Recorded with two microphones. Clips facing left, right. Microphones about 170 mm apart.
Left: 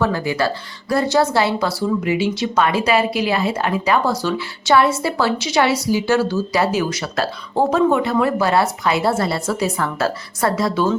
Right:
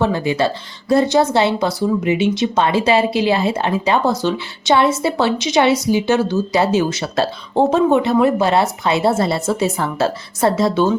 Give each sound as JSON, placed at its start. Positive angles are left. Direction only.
{"t": 0.0, "sound": "speech", "side_deg": -20}